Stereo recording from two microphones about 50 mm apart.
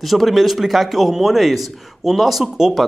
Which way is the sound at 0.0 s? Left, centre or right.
Centre.